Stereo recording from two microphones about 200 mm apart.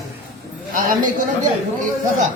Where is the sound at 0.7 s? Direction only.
45° right (ahead or behind).